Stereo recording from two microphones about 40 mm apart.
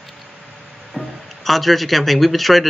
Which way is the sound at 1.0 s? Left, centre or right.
Centre.